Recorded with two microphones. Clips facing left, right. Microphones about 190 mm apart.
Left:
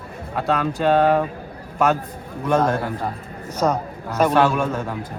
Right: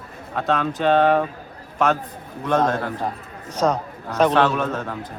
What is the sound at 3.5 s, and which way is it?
A man's voice, 5° left (ahead or behind).